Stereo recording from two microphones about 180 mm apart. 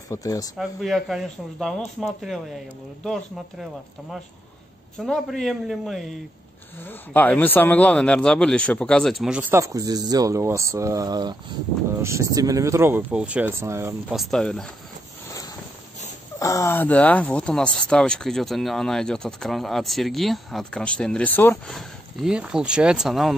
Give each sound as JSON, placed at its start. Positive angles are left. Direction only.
{"t": 0.1, "sound": "speech", "side_deg": 20}
{"t": 0.6, "sound": "speech", "side_deg": 0}
{"t": 4.9, "sound": "speech", "side_deg": 0}
{"t": 6.8, "sound": "speech", "side_deg": 10}
{"t": 14.1, "sound": "speech", "side_deg": 0}
{"t": 16.3, "sound": "speech", "side_deg": 15}